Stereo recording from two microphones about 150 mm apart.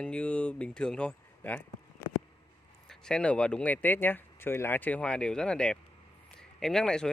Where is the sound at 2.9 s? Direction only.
5° left (ahead or behind).